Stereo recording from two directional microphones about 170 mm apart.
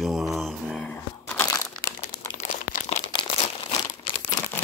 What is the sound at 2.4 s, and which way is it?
Crumpling, 50° left (ahead or behind).